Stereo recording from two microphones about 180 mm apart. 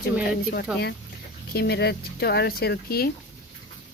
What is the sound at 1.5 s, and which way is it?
Speech, 60° left (ahead or behind).